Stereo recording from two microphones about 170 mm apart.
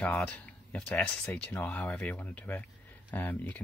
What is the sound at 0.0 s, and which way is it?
Speech, 10° left (ahead or behind).